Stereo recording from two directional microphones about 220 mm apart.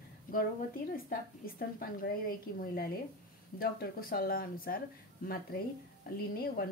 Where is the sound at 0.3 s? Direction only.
40° left (ahead or behind).